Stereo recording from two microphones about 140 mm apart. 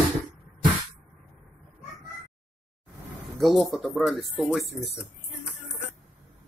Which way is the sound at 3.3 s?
Centre (ahead or behind).